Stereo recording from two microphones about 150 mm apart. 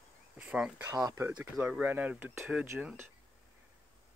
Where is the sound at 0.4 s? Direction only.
5° right (ahead or behind).